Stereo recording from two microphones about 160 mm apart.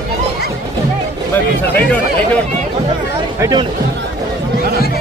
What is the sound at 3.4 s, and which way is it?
Speech, 25° right (ahead or behind).